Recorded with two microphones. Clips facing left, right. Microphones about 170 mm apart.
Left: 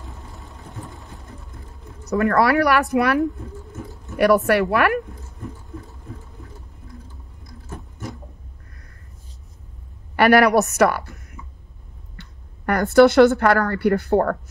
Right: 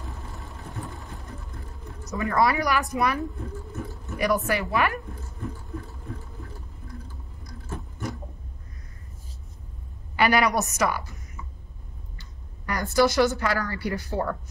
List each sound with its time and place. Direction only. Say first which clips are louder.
0.0 s vehicle: right 1 dB; 20° left (ahead or behind)
0.7 s sewing machine: even; centre (ahead or behind)
1.0 s sewing machine: right 1 dB; 20° left (ahead or behind)
2.0 s speech: left 6 dB; 70° left (ahead or behind)
10.1 s a woman's voice: left 7 dB; 60° left (ahead or behind)